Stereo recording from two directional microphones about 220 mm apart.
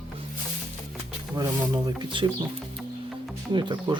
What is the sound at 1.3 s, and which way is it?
Speech, 20° right (ahead or behind).